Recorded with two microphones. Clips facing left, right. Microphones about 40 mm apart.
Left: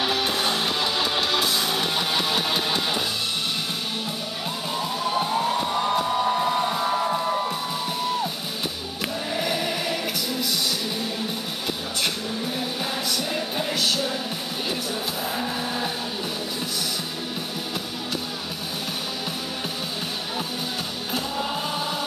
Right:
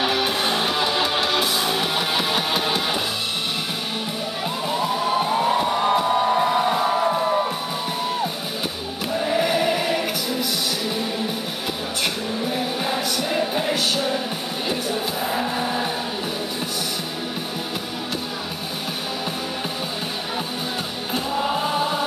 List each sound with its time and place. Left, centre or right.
0.0 s music: centre
4.6 s music: centre
9.2 s music: centre
12.0 s music: centre
21.1 s choir: centre